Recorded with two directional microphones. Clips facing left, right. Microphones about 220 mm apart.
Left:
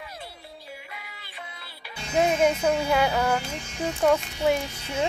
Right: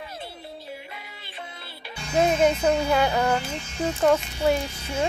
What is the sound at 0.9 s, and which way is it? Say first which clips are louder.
Music: right 2 dB; 25° right (ahead or behind).